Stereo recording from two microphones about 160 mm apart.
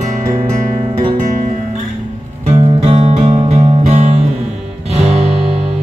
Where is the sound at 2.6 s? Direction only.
40° right (ahead or behind).